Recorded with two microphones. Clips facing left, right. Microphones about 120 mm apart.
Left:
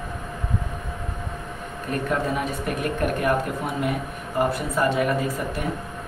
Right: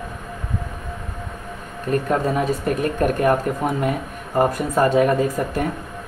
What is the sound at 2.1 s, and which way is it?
Speech, 40° right (ahead or behind).